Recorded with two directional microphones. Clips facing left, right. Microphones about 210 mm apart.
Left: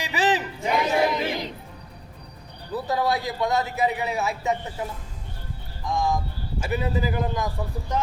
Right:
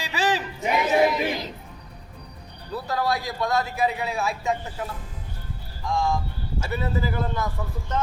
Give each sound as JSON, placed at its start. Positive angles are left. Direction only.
{"t": 0.0, "sound": "a sound", "side_deg": 20}
{"t": 0.6, "sound": "chatter", "side_deg": -20}
{"t": 2.7, "sound": "a man's voice", "side_deg": 20}